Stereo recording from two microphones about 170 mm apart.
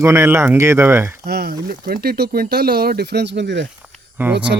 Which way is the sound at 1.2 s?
70° right (ahead or behind).